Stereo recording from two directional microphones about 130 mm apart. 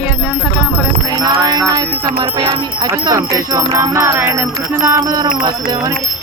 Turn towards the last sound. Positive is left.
turn(degrees=-25)  # may be behind; listen again after turning